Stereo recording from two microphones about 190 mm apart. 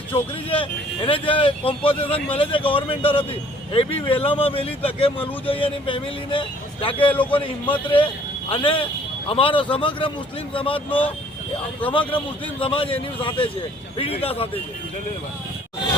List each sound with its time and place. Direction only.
0.1 s speech: 25° left (ahead or behind)
7.1 s a man's voice: 10° left (ahead or behind)
7.4 s speech: 25° left (ahead or behind)